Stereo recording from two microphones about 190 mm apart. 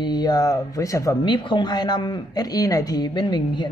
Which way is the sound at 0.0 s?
20° left (ahead or behind).